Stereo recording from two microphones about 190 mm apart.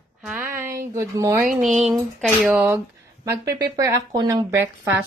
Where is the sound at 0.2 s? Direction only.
10° right (ahead or behind).